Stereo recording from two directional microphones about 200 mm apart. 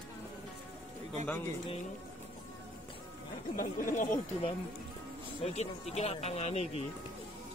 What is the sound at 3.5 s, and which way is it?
Speech, 40° left (ahead or behind).